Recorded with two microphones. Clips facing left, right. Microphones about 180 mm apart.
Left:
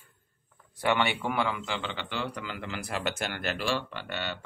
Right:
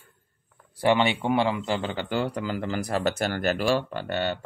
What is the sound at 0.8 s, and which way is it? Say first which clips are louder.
A man's voice: right 5 dB; 25° right (ahead or behind).